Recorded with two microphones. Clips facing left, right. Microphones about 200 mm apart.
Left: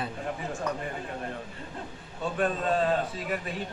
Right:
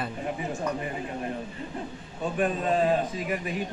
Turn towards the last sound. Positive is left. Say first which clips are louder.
# right 2 dB
turn(degrees=-15)  # may be behind; listen again after turning